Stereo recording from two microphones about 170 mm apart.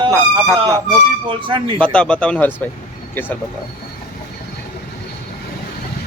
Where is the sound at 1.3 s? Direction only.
30° right (ahead or behind).